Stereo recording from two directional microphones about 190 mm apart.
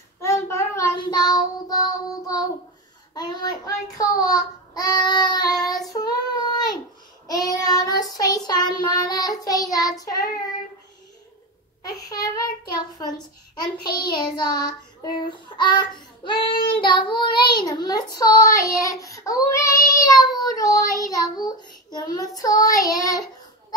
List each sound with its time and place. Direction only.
0.2 s child singing: 15° left (ahead or behind)
11.8 s a child's voice: 20° left (ahead or behind)
13.9 s child singing: 25° left (ahead or behind)